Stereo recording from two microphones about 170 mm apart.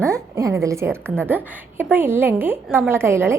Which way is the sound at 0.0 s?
20° right (ahead or behind).